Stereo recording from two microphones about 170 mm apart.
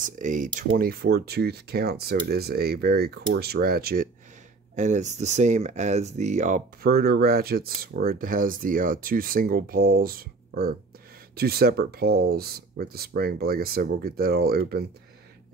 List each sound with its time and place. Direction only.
0.0 s speech: 50° right (ahead or behind)
0.7 s speech: 60° right (ahead or behind)
4.7 s speech: 45° right (ahead or behind)
6.8 s speech: 65° right (ahead or behind)